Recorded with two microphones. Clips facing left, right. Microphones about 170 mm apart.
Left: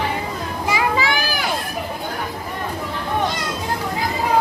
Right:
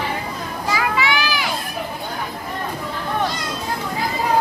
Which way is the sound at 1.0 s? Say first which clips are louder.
Right 1 dB; 40° left (ahead or behind).